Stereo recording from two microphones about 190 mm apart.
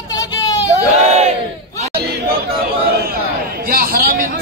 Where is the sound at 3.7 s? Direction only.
50° right (ahead or behind).